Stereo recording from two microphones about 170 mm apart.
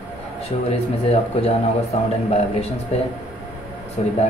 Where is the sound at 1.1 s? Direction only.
35° left (ahead or behind).